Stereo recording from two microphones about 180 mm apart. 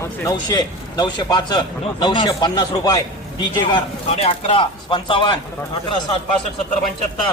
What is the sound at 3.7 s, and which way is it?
A man's voice, 30° left (ahead or behind).